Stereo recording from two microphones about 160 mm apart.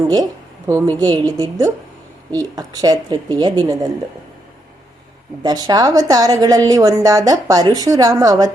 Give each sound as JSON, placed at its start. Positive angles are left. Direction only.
{"t": 0.7, "sound": "a woman's voice", "side_deg": -20}
{"t": 5.4, "sound": "a woman's voice", "side_deg": -25}